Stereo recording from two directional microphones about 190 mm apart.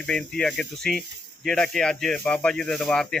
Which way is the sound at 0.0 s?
5° left (ahead or behind).